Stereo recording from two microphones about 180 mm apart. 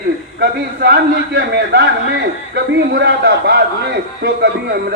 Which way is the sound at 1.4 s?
70° right (ahead or behind).